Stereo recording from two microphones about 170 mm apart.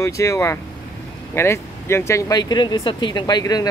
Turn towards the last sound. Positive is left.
turn(degrees=20)  # may be behind; listen again after turning